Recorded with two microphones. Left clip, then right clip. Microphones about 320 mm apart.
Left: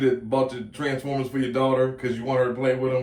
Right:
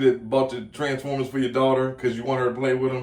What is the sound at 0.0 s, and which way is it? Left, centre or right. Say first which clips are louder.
Speech: right 2 dB; centre.